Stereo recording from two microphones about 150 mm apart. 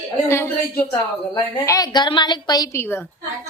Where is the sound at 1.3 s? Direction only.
25° left (ahead or behind).